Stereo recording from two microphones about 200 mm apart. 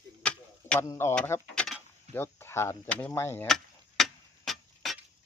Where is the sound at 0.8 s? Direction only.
15° left (ahead or behind).